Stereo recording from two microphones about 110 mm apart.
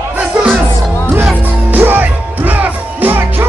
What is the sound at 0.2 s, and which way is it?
Music, 10° right (ahead or behind).